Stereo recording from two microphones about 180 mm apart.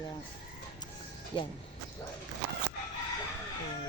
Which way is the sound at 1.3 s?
25° left (ahead or behind).